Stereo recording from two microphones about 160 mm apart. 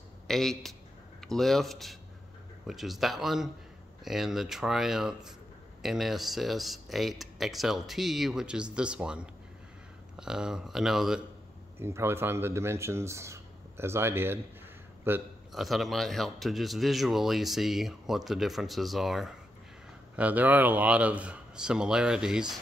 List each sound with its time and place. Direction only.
0.3 s speech: centre (ahead or behind)
11.8 s speech: 15° right (ahead or behind)
15.5 s speech: centre (ahead or behind)